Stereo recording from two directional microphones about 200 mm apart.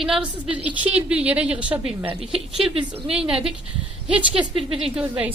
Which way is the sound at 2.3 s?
25° right (ahead or behind).